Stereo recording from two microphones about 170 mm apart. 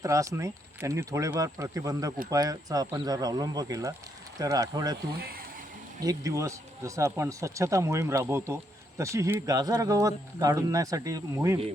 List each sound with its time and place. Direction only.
0.0 s speech: 20° right (ahead or behind)
6.0 s speech: 20° right (ahead or behind)